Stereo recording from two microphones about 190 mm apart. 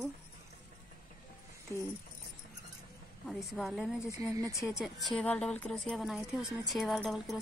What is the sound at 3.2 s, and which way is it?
Speech, centre (ahead or behind).